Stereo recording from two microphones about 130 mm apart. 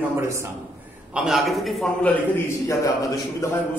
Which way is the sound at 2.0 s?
15° left (ahead or behind).